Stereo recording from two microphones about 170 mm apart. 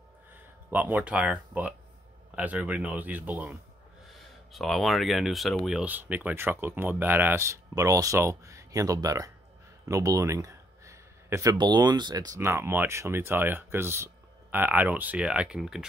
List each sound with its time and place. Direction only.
0.7 s speech: 10° right (ahead or behind)
4.1 s speech: centre (ahead or behind); by 9.3 s 20° right (ahead or behind)
9.8 s a sound: 20° right (ahead or behind)
11.5 s speech: 25° right (ahead or behind); by 15.8 s 5° right (ahead or behind)